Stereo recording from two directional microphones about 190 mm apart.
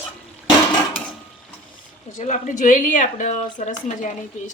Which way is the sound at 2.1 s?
40° left (ahead or behind).